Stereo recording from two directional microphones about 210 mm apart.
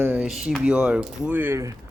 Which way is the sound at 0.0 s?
5° right (ahead or behind).